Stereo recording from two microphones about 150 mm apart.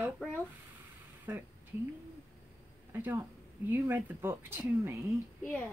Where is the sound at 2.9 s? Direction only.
15° right (ahead or behind).